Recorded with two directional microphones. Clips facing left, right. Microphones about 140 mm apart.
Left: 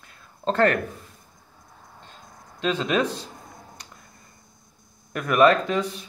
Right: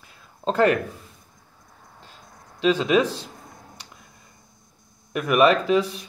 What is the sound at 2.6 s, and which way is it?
Speech, 5° right (ahead or behind).